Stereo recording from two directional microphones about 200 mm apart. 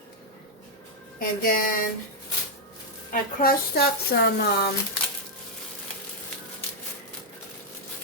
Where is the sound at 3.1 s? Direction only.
45° left (ahead or behind).